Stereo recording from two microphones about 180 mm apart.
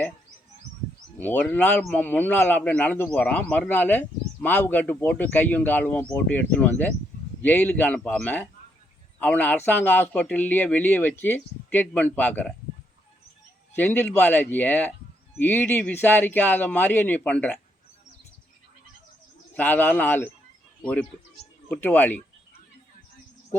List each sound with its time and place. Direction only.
1.2 s speech: 10° left (ahead or behind)
13.7 s speech: 10° left (ahead or behind)
19.5 s speech: 10° left (ahead or behind)